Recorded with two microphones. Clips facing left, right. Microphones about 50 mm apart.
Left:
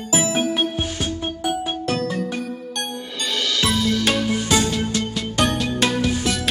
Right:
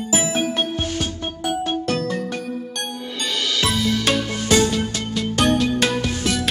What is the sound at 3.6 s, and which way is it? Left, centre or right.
Music, centre.